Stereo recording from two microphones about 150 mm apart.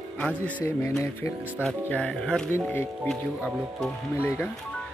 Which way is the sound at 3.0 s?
Centre (ahead or behind).